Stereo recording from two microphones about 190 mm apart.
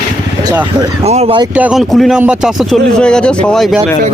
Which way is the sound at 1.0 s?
35° right (ahead or behind).